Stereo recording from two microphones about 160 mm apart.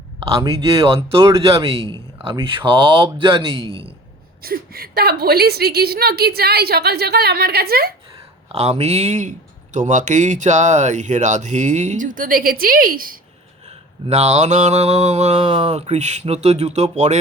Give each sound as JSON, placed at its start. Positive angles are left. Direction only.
{"t": 0.2, "sound": "a man's voice", "side_deg": -35}
{"t": 4.4, "sound": "a woman's voice", "side_deg": -70}
{"t": 8.1, "sound": "speech", "side_deg": -40}
{"t": 9.7, "sound": "mantra", "side_deg": -50}
{"t": 13.7, "sound": "mantra", "side_deg": -45}